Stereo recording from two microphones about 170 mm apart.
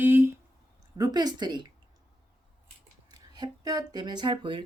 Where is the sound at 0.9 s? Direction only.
25° right (ahead or behind).